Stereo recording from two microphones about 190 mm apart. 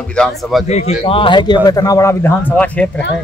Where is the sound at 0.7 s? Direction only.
35° left (ahead or behind).